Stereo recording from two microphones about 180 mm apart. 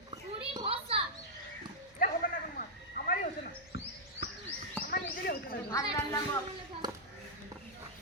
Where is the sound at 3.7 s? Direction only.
70° left (ahead or behind).